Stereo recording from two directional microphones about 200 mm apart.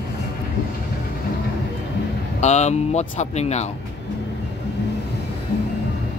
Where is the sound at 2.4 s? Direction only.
35° left (ahead or behind).